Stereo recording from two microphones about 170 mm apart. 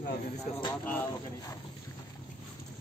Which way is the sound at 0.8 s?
10° left (ahead or behind).